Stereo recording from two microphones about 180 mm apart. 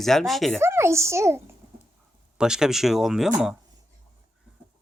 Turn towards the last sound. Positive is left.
turn(degrees=0)  # may be behind; listen again after turning